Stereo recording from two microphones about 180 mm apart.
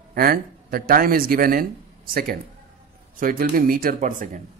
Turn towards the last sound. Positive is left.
turn(degrees=-45)  # may be behind; listen again after turning